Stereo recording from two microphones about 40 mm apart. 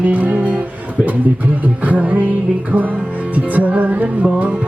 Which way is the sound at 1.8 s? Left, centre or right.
Right.